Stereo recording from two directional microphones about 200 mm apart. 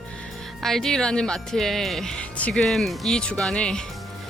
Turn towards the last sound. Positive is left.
turn(degrees=5)  # may be behind; listen again after turning